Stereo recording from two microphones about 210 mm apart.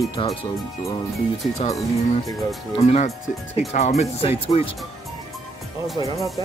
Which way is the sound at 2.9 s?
30° left (ahead or behind).